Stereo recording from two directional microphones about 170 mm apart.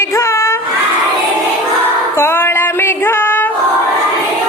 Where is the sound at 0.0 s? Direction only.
15° left (ahead or behind).